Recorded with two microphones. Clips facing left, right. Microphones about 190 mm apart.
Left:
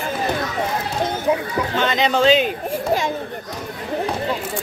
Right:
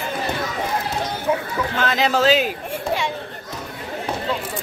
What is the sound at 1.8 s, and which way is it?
Speech, 5° right (ahead or behind).